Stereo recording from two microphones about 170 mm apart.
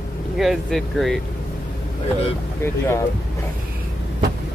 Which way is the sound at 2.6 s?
15° left (ahead or behind).